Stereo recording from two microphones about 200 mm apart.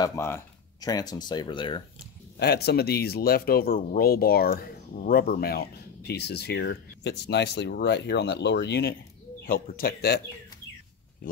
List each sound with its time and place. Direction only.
0.0 s speech: 15° left (ahead or behind)
2.3 s speech: 55° left (ahead or behind)